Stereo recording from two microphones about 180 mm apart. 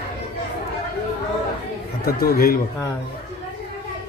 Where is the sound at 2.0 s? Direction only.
55° left (ahead or behind).